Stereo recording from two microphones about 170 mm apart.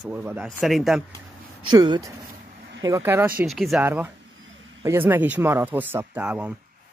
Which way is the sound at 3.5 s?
Centre (ahead or behind).